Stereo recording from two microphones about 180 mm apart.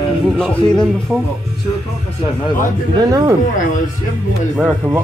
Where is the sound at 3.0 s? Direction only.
20° right (ahead or behind).